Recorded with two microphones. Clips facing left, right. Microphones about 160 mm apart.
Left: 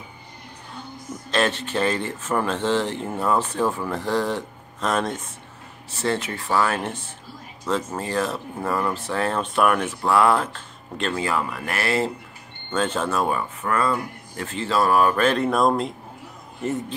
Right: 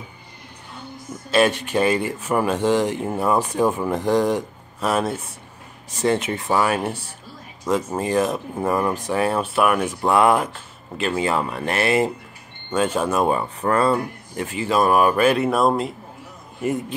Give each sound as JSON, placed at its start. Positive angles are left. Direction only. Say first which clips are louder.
{"t": 1.3, "sound": "speech", "louder": "right 5 dB", "side_deg": -10}
{"t": 11.2, "sound": "speech", "louder": "right 3 dB", "side_deg": -25}
{"t": 14.3, "sound": "speech", "louder": "right 3 dB", "side_deg": -15}